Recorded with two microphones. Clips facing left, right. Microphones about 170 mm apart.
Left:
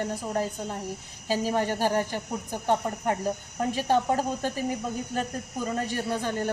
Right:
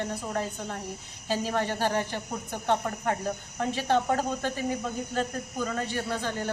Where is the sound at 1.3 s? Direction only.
10° left (ahead or behind).